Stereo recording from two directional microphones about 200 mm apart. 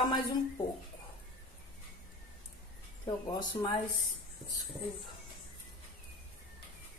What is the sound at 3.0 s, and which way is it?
Speech, 20° left (ahead or behind).